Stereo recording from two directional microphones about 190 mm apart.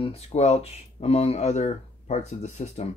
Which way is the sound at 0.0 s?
30° left (ahead or behind).